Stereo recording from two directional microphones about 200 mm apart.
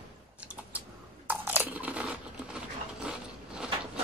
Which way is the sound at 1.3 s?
10° right (ahead or behind).